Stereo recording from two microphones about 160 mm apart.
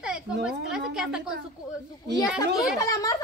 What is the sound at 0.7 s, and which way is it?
Speech, 5° right (ahead or behind).